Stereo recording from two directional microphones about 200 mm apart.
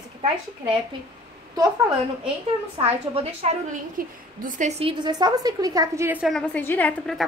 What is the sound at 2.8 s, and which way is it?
A woman's voice, 30° right (ahead or behind).